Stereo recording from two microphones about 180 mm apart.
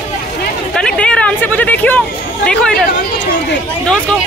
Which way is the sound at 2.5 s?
5° left (ahead or behind).